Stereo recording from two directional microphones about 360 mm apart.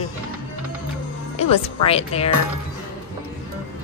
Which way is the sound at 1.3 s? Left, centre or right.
Centre.